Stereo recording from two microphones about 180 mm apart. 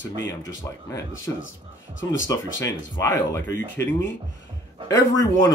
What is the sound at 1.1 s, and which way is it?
Speech, 90° left.